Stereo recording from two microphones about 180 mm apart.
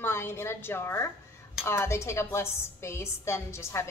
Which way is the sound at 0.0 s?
15° left (ahead or behind).